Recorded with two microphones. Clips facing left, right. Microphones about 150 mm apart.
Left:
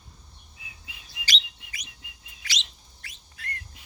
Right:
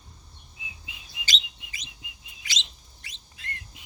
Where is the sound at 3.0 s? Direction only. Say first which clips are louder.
Left 2 dB; 20° right (ahead or behind).